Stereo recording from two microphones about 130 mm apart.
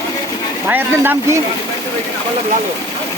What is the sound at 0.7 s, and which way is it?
Speech, 15° right (ahead or behind).